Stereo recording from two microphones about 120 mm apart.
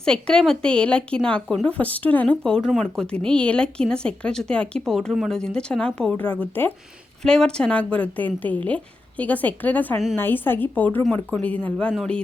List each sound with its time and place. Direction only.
0.0 s a woman's voice: 5° left (ahead or behind)